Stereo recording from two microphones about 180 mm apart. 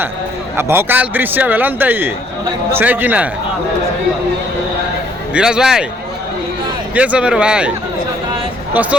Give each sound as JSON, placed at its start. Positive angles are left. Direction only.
{"t": 0.5, "sound": "a man's voice", "side_deg": -10}
{"t": 5.3, "sound": "speech", "side_deg": -5}
{"t": 6.9, "sound": "speech", "side_deg": -5}
{"t": 8.7, "sound": "speech", "side_deg": -10}